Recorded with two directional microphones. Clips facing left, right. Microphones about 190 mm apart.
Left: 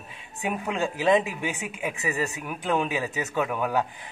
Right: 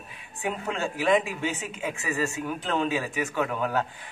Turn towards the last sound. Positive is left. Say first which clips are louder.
# left 1 dB
turn(degrees=15)  # may be behind; listen again after turning